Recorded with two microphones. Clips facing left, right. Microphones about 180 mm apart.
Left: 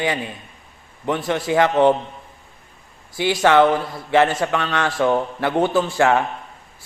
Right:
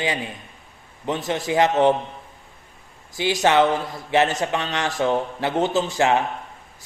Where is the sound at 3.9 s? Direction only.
20° right (ahead or behind).